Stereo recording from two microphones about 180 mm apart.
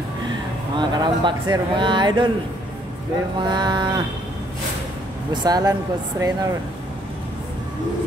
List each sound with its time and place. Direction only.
0.7 s speech: 25° right (ahead or behind)
3.3 s speech: 25° right (ahead or behind)
5.3 s speech: 20° right (ahead or behind)